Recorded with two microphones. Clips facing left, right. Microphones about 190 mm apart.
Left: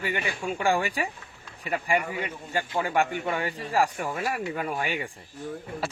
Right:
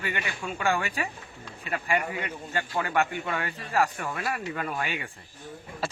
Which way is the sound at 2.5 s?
10° left (ahead or behind).